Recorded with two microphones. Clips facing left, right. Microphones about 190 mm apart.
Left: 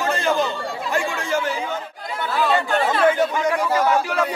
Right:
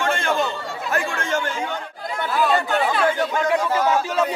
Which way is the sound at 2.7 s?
Centre (ahead or behind).